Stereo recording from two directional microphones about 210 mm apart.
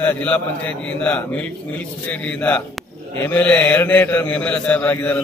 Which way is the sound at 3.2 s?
5° left (ahead or behind).